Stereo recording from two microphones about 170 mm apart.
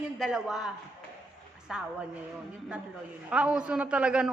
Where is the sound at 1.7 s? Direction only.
5° right (ahead or behind).